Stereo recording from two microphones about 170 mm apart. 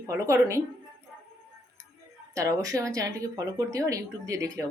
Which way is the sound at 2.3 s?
20° right (ahead or behind).